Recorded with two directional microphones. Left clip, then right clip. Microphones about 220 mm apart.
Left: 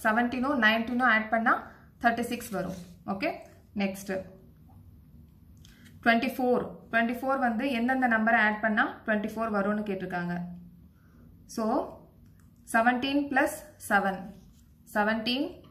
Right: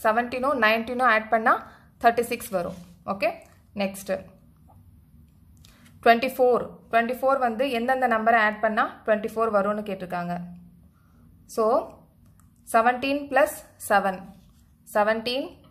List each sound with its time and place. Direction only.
0.0 s a woman's voice: 50° right (ahead or behind)
5.9 s a woman's voice: 50° right (ahead or behind)
11.4 s a woman's voice: 50° right (ahead or behind)